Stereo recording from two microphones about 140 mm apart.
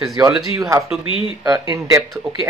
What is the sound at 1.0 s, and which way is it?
Speech, 40° left (ahead or behind).